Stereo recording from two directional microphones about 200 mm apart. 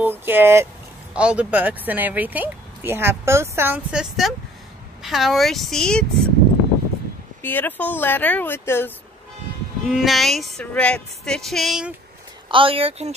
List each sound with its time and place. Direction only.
0.0 s speech: 10° right (ahead or behind)
5.0 s music: centre (ahead or behind)
7.4 s speech: 10° left (ahead or behind)
9.8 s music: centre (ahead or behind)
12.4 s speech: 25° right (ahead or behind)